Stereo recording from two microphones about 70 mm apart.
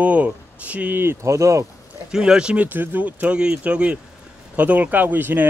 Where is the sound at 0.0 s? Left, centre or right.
Right.